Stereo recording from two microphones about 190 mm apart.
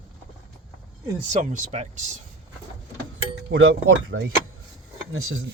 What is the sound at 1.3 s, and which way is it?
Speech, 40° right (ahead or behind).